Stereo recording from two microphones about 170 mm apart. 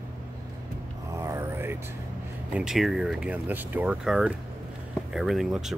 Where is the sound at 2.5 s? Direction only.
5° right (ahead or behind).